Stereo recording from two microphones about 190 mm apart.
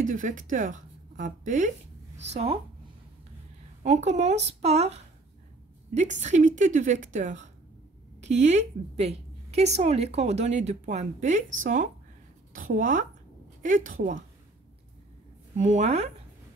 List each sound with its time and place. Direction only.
0.0 s a woman's voice: 45° right (ahead or behind)
3.8 s a woman's voice: 35° right (ahead or behind)
6.2 s a woman's voice: 40° right (ahead or behind)
15.5 s a woman's voice: 40° right (ahead or behind)